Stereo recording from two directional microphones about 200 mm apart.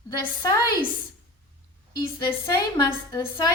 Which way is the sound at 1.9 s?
20° left (ahead or behind).